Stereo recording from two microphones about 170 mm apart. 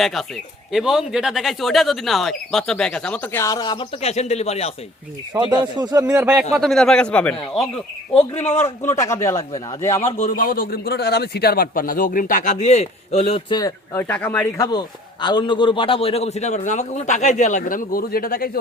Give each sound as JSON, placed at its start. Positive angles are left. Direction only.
{"t": 0.0, "sound": "speech", "side_deg": 0}
{"t": 3.4, "sound": "speech", "side_deg": 20}
{"t": 4.0, "sound": "a man's voice", "side_deg": 40}
{"t": 5.3, "sound": "a man's voice", "side_deg": -25}
{"t": 6.5, "sound": "speech", "side_deg": 0}
{"t": 10.2, "sound": "a man's voice", "side_deg": 55}
{"t": 13.6, "sound": "a man's voice", "side_deg": 20}
{"t": 14.1, "sound": "speech", "side_deg": 10}
{"t": 14.7, "sound": "a man's voice", "side_deg": 25}